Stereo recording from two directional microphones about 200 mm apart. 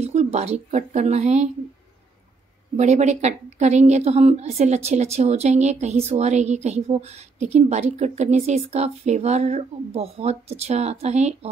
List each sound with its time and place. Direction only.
0.0 s a woman's voice: 35° right (ahead or behind)
2.7 s a woman's voice: 35° right (ahead or behind)